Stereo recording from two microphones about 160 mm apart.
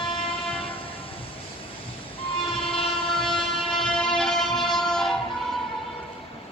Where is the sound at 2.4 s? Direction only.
35° left (ahead or behind).